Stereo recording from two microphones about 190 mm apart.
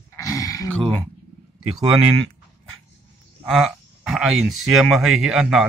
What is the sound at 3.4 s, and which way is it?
Speech, centre (ahead or behind).